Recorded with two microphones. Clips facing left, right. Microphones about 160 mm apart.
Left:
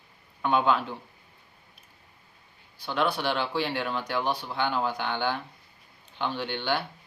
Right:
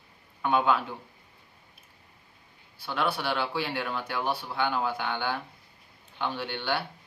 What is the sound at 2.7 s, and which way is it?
Speech, 5° right (ahead or behind).